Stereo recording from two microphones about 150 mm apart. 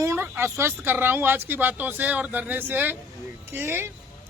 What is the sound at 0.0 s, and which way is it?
Speech, 20° right (ahead or behind).